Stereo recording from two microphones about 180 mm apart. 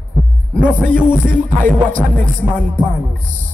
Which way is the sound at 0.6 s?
50° right (ahead or behind).